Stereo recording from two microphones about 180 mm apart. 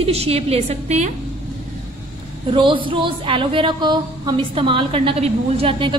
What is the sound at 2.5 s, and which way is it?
Speech, 30° right (ahead or behind).